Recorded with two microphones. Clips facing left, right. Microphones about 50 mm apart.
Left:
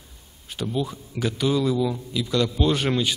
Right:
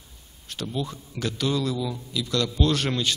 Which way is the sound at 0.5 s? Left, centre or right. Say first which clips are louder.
Left 3 dB; centre.